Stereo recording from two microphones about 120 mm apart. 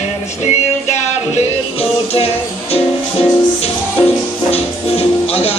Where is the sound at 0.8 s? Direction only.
70° left (ahead or behind).